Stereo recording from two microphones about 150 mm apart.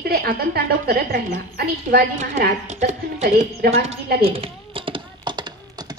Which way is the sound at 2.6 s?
50° right (ahead or behind).